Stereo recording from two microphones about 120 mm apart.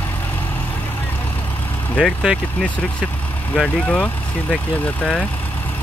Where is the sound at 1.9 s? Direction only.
Centre (ahead or behind).